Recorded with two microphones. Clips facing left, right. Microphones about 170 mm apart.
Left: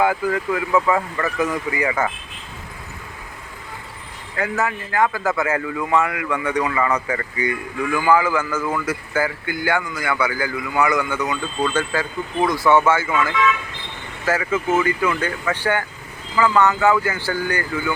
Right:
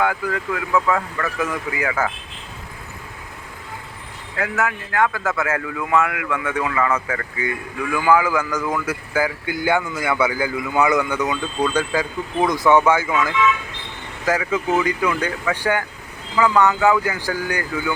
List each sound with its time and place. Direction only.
0.0 s speech: 5° left (ahead or behind)
4.4 s speech: centre (ahead or behind)